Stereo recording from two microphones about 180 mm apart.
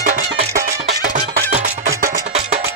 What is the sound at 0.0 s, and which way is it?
Music, 45° right (ahead or behind).